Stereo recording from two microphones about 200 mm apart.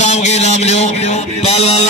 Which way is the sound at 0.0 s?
35° left (ahead or behind).